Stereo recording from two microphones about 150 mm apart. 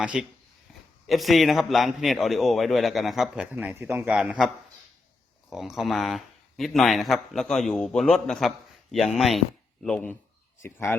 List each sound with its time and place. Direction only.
0.0 s speech: 10° right (ahead or behind); by 10.9 s 15° left (ahead or behind)